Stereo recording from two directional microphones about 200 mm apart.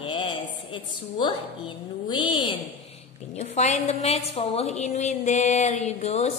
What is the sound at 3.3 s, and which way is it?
A woman's voice, 35° left (ahead or behind).